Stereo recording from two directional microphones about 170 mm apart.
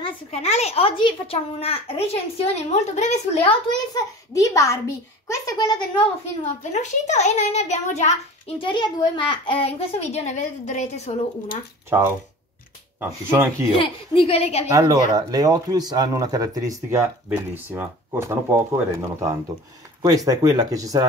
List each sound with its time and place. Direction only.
0.0 s a child's voice: 40° left (ahead or behind)
3.7 s a child's voice: 20° left (ahead or behind)
6.4 s a child's voice: 45° left (ahead or behind)
13.0 s speech: 15° right (ahead or behind)
13.7 s a child's voice: 30° left (ahead or behind)
14.7 s speech: 20° right (ahead or behind)
20.0 s speech: 20° right (ahead or behind)